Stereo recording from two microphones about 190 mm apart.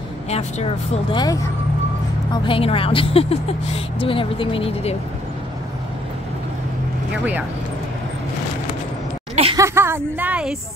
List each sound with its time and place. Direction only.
0.3 s speech: 35° left (ahead or behind)
1.1 s speech: 20° left (ahead or behind)
9.3 s a sound: 30° right (ahead or behind)
9.6 s speech: 15° right (ahead or behind)